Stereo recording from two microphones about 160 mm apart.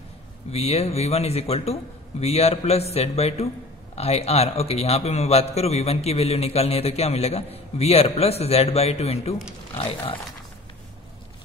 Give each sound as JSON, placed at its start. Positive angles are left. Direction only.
{"t": 0.5, "sound": "a man's voice", "side_deg": 40}